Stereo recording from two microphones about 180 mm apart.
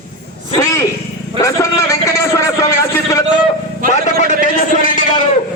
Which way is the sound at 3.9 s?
45° left (ahead or behind).